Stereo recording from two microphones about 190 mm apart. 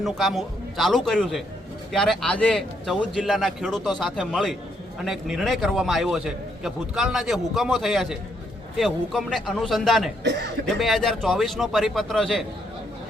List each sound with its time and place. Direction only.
0.0 s a man's voice: centre (ahead or behind)
10.2 s speech: 60° right (ahead or behind)
10.8 s a man's voice: centre (ahead or behind)